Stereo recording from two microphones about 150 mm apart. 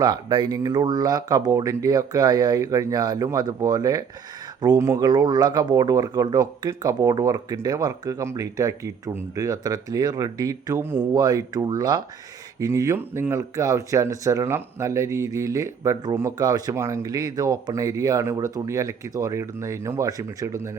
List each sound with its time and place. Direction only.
0.0 s speech: 30° right (ahead or behind)